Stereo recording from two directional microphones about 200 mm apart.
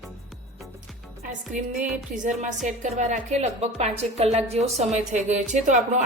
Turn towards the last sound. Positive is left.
turn(degrees=-35)  # may be behind; listen again after turning